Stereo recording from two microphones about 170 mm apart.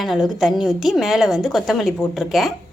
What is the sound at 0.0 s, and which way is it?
A woman's voice, centre (ahead or behind).